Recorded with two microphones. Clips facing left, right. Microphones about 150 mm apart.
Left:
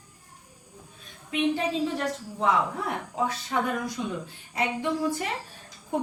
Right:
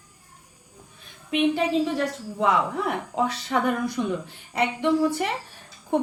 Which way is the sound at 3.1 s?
75° right (ahead or behind).